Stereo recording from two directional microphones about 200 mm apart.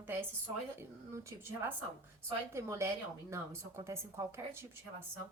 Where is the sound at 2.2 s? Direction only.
15° right (ahead or behind).